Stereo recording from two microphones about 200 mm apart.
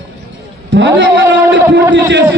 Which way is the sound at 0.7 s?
65° right (ahead or behind).